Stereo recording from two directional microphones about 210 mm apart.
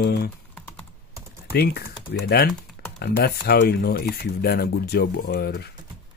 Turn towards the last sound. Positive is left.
turn(degrees=50)  # may be behind; listen again after turning